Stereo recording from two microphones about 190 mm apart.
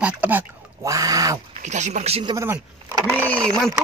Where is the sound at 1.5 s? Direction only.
40° right (ahead or behind).